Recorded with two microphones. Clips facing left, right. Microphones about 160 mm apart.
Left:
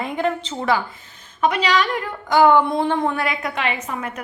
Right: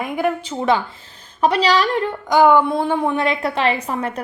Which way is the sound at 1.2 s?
35° right (ahead or behind).